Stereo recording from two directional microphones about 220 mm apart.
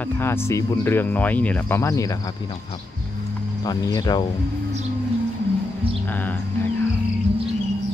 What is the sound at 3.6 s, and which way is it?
Speech, 15° left (ahead or behind).